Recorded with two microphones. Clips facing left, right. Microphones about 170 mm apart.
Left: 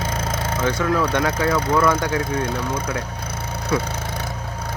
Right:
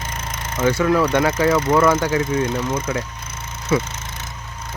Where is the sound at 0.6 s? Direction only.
10° right (ahead or behind).